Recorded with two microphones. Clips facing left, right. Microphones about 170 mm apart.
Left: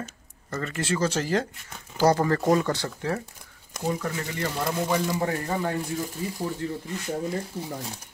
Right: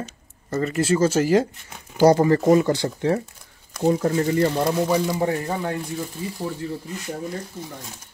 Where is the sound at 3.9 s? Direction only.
35° right (ahead or behind).